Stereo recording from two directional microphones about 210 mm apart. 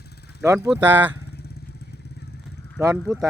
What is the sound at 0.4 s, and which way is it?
Speech, 15° right (ahead or behind).